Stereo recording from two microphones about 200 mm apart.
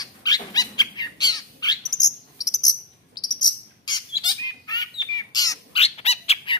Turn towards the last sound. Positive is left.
turn(degrees=30)  # may be behind; listen again after turning